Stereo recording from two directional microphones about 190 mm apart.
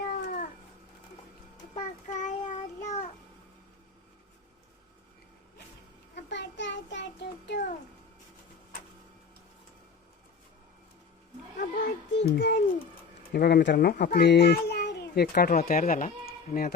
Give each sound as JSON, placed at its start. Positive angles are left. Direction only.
{"t": 0.1, "sound": "cat", "side_deg": 50}
{"t": 1.7, "sound": "child singing", "side_deg": 40}
{"t": 6.2, "sound": "child singing", "side_deg": 70}
{"t": 11.6, "sound": "a sound", "side_deg": 55}
{"t": 13.3, "sound": "a child's voice", "side_deg": 60}
{"t": 15.4, "sound": "speech", "side_deg": 40}